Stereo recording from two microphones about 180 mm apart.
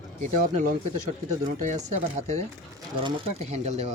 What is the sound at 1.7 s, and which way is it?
Speech, 40° right (ahead or behind).